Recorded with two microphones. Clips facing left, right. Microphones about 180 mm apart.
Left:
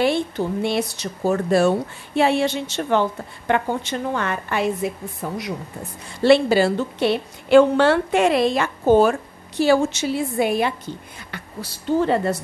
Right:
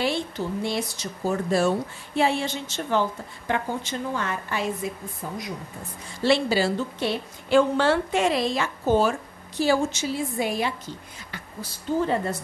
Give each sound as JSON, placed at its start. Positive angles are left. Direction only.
{"t": 0.0, "sound": "a woman's voice", "side_deg": 60}
{"t": 6.2, "sound": "speech", "side_deg": 60}
{"t": 9.6, "sound": "speech", "side_deg": 70}
{"t": 11.3, "sound": "a woman's voice", "side_deg": 70}